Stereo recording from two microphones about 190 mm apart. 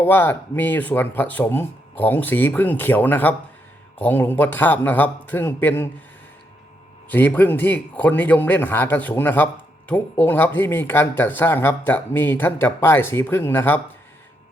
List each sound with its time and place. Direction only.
0.0 s speech: 10° left (ahead or behind)
7.1 s speech: 10° left (ahead or behind)